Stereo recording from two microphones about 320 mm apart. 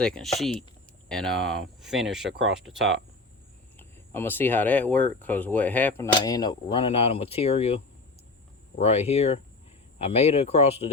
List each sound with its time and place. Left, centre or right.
0.0 s speech: centre
8.8 s speech: centre